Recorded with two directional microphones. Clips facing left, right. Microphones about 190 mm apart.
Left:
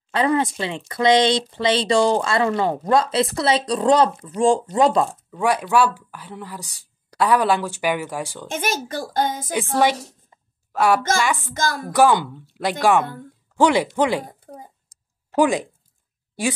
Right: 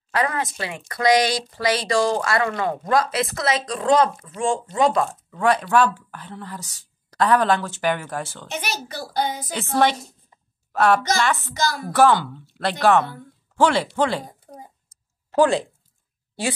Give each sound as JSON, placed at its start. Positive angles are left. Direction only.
{"t": 0.1, "sound": "speech", "side_deg": 25}
{"t": 5.0, "sound": "speech", "side_deg": 15}
{"t": 8.5, "sound": "a woman's voice", "side_deg": 50}
{"t": 10.7, "sound": "a woman's voice", "side_deg": 10}
{"t": 11.5, "sound": "a woman's voice", "side_deg": 50}
{"t": 11.9, "sound": "speech", "side_deg": 15}
{"t": 15.3, "sound": "speech", "side_deg": 15}